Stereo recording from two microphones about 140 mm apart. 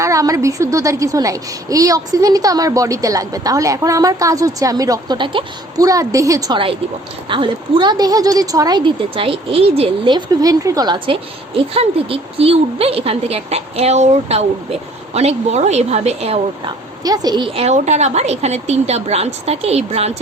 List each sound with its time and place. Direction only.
0.0 s a woman's voice: 25° right (ahead or behind)
7.3 s a woman's voice: 35° right (ahead or behind)
16.6 s a woman's voice: 30° right (ahead or behind); by 20.1 s 50° right (ahead or behind)